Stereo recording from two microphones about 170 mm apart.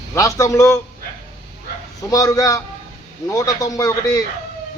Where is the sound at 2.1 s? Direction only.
20° left (ahead or behind).